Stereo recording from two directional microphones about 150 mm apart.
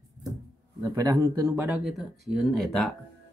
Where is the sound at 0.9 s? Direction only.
25° right (ahead or behind).